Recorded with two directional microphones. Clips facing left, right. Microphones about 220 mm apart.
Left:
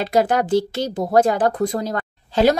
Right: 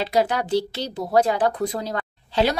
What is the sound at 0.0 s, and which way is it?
Speech, 50° left (ahead or behind).